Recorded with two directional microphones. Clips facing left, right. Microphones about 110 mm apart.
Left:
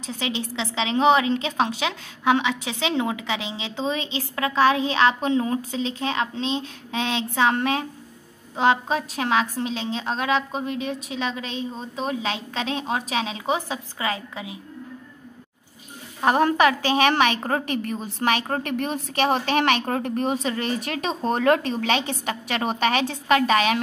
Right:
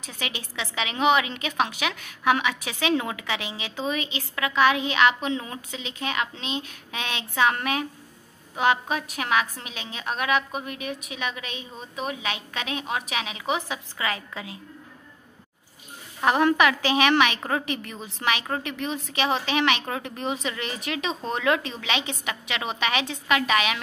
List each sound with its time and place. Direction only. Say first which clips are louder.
0.0 s a woman's voice: left 7 dB; 25° left (ahead or behind)
16.2 s speech: left 2 dB; 35° left (ahead or behind)